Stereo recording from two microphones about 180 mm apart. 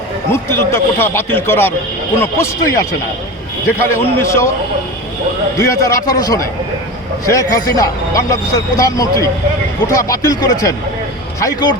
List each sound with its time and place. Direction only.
0.3 s speech: 15° left (ahead or behind)
5.5 s speech: 20° left (ahead or behind)